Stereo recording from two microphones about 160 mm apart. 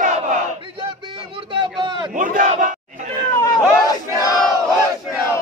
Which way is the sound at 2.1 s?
55° right (ahead or behind).